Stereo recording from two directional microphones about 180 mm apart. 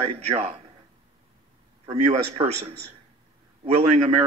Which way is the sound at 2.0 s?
35° right (ahead or behind).